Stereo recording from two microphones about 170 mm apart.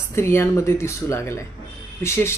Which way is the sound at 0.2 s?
15° left (ahead or behind).